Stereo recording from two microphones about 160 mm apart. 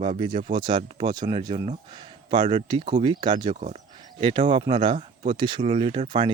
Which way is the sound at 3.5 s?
45° right (ahead or behind).